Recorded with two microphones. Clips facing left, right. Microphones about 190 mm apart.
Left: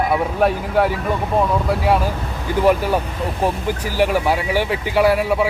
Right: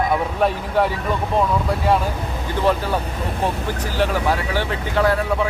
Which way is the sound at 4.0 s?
10° left (ahead or behind).